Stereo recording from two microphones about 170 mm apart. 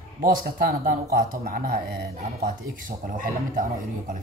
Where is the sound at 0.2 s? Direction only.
55° right (ahead or behind).